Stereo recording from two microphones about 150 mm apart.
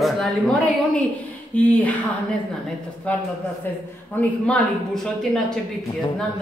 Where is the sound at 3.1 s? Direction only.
10° left (ahead or behind).